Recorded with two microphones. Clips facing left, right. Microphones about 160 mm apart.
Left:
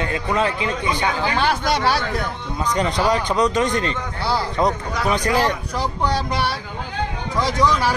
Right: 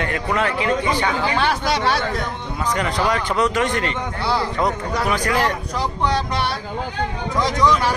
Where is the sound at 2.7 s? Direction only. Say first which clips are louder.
Left 2 dB; 20° left (ahead or behind).